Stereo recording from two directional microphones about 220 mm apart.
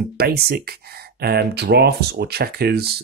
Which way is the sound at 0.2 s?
45° right (ahead or behind).